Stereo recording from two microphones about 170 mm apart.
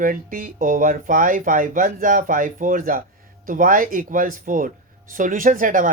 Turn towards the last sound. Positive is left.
turn(degrees=-50)  # may be behind; listen again after turning